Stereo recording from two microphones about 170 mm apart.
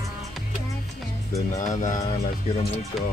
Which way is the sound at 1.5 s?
45° left (ahead or behind).